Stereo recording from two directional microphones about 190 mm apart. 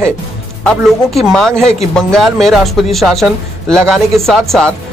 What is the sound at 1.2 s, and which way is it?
Speech, centre (ahead or behind).